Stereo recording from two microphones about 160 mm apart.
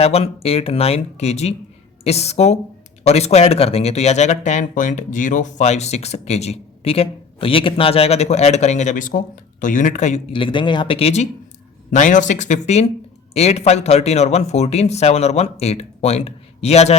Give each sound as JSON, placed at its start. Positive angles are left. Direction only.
{"t": 0.0, "sound": "speech", "side_deg": 40}
{"t": 10.3, "sound": "speech", "side_deg": 30}
{"t": 11.9, "sound": "speech", "side_deg": 50}